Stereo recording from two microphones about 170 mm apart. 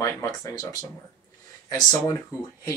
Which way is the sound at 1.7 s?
20° left (ahead or behind).